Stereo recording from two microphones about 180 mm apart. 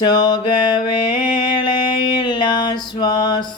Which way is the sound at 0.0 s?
25° left (ahead or behind).